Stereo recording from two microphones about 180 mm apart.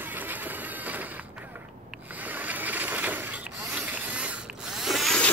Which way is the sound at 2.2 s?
10° right (ahead or behind).